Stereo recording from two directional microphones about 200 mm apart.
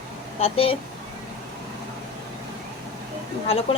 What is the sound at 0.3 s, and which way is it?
Speech, 30° left (ahead or behind).